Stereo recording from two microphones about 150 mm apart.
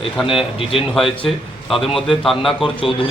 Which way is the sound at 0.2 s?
5° right (ahead or behind).